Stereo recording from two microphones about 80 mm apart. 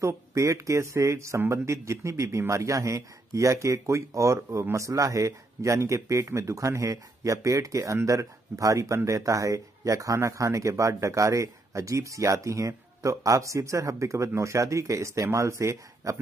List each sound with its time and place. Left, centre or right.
0.0 s speech: right